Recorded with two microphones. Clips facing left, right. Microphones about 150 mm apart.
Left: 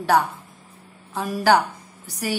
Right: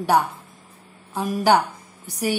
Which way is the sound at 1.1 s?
15° right (ahead or behind).